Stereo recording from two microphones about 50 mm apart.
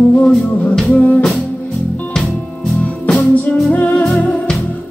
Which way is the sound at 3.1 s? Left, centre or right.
Left.